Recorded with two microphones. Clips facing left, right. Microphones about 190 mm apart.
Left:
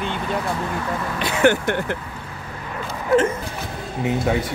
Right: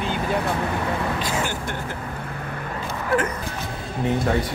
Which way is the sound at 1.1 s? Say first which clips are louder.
Left 8 dB; 65° left (ahead or behind).